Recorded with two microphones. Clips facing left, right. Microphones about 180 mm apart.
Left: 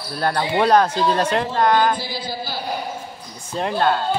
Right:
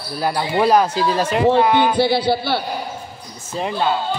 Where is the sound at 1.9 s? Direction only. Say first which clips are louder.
Right 12 dB; 70° right (ahead or behind).